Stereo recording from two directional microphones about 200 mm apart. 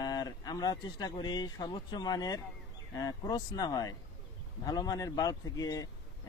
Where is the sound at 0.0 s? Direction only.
20° left (ahead or behind).